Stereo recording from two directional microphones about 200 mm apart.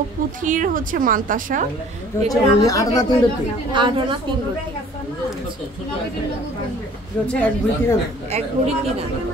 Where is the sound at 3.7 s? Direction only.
25° right (ahead or behind).